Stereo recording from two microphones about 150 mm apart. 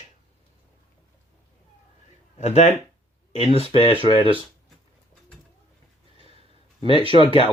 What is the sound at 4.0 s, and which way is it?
Speech, 35° right (ahead or behind).